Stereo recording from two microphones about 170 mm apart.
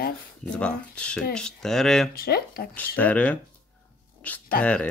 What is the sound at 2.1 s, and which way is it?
Speech, 60° left (ahead or behind).